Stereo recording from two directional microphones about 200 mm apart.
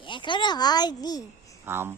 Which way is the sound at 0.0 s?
25° left (ahead or behind).